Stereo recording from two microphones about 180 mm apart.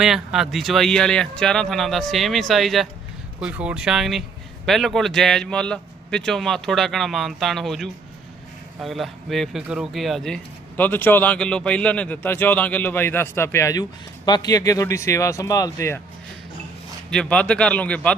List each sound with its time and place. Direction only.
0.0 s speech: centre (ahead or behind); by 16.0 s 15° left (ahead or behind)
17.1 s speech: 5° left (ahead or behind)